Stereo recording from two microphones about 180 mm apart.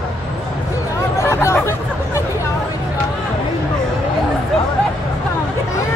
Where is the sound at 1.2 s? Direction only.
15° left (ahead or behind).